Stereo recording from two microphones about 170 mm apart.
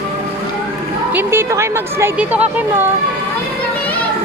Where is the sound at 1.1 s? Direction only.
15° right (ahead or behind).